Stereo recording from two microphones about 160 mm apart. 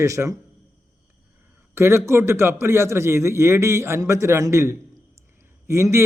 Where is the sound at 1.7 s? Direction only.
15° right (ahead or behind).